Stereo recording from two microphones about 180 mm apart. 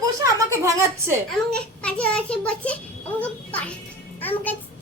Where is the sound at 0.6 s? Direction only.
15° right (ahead or behind).